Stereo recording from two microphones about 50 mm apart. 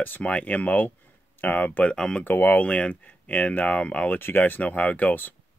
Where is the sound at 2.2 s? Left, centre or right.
Left.